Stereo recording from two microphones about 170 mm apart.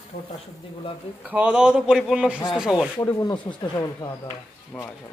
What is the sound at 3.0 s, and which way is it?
Speech, 20° left (ahead or behind).